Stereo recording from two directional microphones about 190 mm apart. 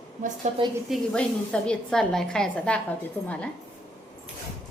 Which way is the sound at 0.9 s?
5° left (ahead or behind).